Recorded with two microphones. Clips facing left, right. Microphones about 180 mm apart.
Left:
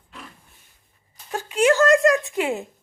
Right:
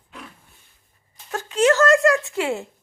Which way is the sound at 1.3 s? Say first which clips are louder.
Right 1 dB; 15° left (ahead or behind).